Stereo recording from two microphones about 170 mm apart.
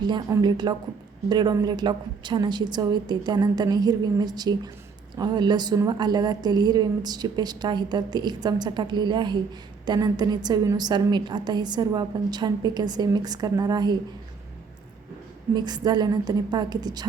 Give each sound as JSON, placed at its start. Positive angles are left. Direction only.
{"t": 0.0, "sound": "a woman's voice", "side_deg": -25}
{"t": 15.5, "sound": "a woman's voice", "side_deg": -25}